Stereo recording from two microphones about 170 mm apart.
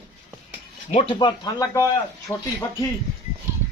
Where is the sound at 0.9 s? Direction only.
30° left (ahead or behind); by 2.4 s 10° left (ahead or behind).